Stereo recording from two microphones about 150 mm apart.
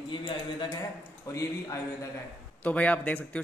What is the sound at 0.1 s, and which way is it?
Speech, 30° left (ahead or behind).